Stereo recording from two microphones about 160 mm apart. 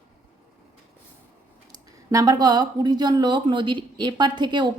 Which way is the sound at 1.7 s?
25° right (ahead or behind).